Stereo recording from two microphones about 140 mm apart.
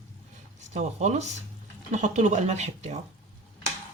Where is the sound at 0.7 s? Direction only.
55° right (ahead or behind).